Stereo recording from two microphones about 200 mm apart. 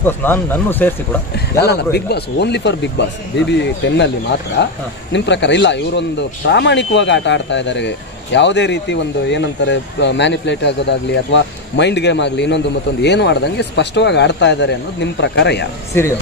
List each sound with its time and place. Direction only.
0.0 s speech: 10° left (ahead or behind)
1.3 s speech: 55° left (ahead or behind)
15.9 s speech: 10° left (ahead or behind)